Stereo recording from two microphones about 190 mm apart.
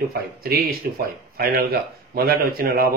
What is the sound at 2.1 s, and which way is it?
Speech, 50° right (ahead or behind).